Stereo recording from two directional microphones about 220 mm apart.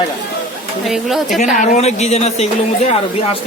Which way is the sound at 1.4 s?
35° left (ahead or behind).